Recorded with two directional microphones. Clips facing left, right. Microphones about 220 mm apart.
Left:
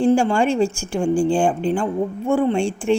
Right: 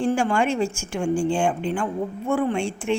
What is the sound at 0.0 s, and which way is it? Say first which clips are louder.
Speech: left 5 dB; 30° left (ahead or behind).